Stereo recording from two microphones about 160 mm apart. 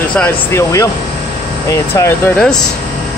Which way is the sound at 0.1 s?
5° left (ahead or behind).